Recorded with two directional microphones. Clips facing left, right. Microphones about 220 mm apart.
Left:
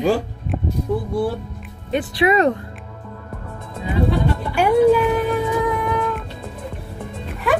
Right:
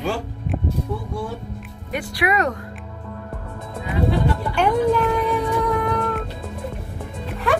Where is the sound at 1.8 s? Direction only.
25° left (ahead or behind).